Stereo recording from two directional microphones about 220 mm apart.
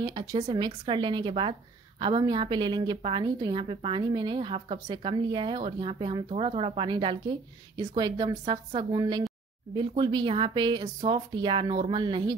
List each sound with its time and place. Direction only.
0.0 s a woman's voice: 20° right (ahead or behind)